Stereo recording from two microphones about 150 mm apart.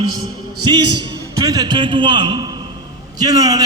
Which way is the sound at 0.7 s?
30° right (ahead or behind).